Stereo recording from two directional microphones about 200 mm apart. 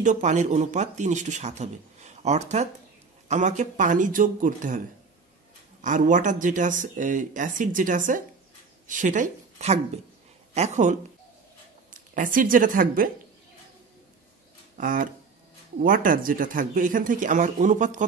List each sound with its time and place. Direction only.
0.0 s a woman's voice: 35° right (ahead or behind)
14.8 s speech: 45° right (ahead or behind)